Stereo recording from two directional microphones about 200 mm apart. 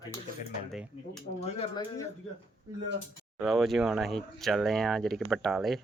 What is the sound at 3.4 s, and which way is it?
Speech, centre (ahead or behind).